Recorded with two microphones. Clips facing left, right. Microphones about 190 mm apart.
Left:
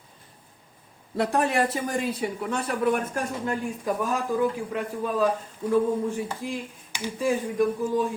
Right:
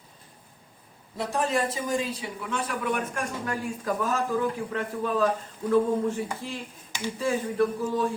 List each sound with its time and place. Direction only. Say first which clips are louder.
1.1 s speech: left 3 dB; 65° left (ahead or behind); by 3.0 s 40° left (ahead or behind)
3.4 s speech: left 2 dB; 20° left (ahead or behind)